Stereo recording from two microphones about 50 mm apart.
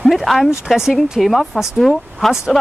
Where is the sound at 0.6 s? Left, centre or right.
Centre.